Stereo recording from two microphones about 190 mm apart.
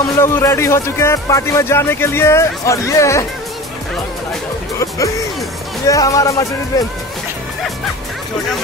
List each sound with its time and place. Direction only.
0.2 s speech: 15° left (ahead or behind)
4.7 s music: 15° left (ahead or behind)
5.9 s speech: 15° left (ahead or behind)